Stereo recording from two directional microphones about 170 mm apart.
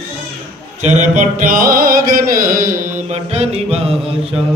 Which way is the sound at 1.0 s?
50° right (ahead or behind).